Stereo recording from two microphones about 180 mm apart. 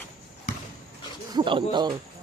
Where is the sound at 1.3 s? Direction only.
25° right (ahead or behind).